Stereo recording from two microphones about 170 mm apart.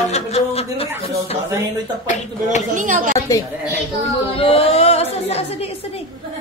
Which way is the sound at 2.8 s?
50° right (ahead or behind).